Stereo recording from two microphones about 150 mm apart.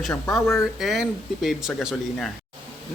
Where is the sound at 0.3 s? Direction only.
20° left (ahead or behind).